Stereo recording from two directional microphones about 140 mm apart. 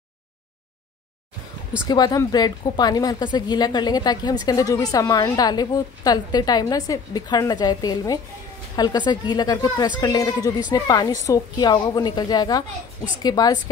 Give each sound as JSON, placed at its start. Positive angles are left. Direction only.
{"t": 1.9, "sound": "a woman's voice", "side_deg": 30}